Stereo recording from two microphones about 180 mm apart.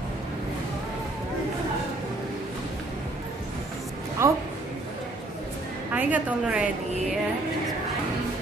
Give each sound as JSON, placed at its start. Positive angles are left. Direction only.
{"t": 4.2, "sound": "a woman's voice", "side_deg": -15}
{"t": 5.9, "sound": "a woman's voice", "side_deg": -10}